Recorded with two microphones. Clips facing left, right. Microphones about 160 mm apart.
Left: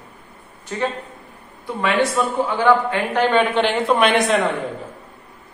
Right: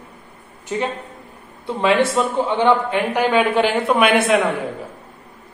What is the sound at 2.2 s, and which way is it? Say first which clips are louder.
A man's voice: right 2 dB; 25° right (ahead or behind).